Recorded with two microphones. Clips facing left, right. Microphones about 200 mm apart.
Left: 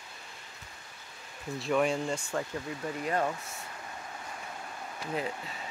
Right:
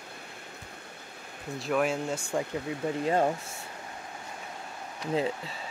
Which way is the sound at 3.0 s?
25° right (ahead or behind).